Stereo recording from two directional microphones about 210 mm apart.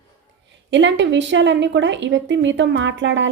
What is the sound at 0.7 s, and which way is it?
A woman's voice, 60° right (ahead or behind).